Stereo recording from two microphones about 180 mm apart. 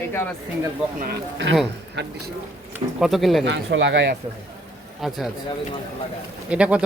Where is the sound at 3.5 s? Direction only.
85° right.